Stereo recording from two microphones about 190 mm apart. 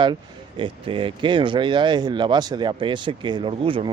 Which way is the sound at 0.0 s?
25° right (ahead or behind).